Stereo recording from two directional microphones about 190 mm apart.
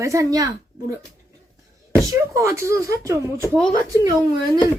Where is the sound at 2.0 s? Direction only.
15° right (ahead or behind).